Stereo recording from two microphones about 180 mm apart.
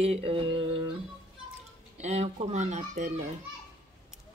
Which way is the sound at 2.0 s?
35° right (ahead or behind).